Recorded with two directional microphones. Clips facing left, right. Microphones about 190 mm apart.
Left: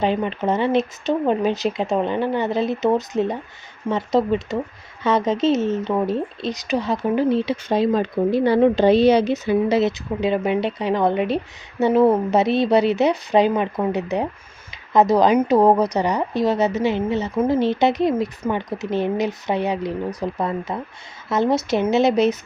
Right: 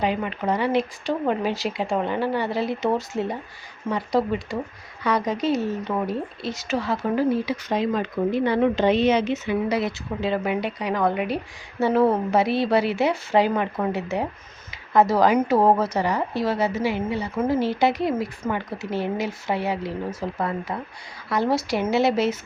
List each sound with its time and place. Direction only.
0.0 s speech: 25° left (ahead or behind)